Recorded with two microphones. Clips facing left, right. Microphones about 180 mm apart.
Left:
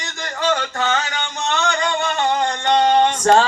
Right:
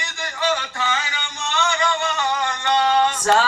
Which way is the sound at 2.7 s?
20° left (ahead or behind).